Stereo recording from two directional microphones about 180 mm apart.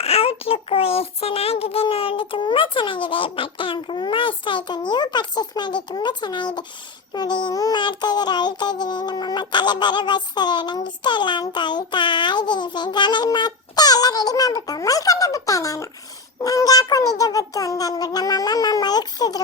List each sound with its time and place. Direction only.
0.0 s child singing: 35° left (ahead or behind)